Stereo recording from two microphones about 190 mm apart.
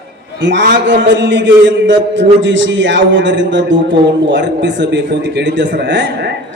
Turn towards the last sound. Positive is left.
turn(degrees=-70)  # may be behind; listen again after turning